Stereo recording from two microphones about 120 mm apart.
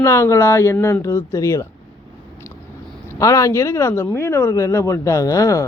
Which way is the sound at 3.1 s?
25° left (ahead or behind).